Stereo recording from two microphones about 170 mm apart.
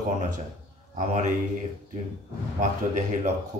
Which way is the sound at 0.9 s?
45° right (ahead or behind).